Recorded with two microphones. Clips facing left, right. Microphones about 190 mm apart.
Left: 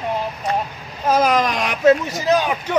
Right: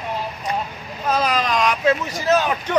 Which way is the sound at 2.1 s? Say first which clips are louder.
Left 1 dB; 15° left (ahead or behind).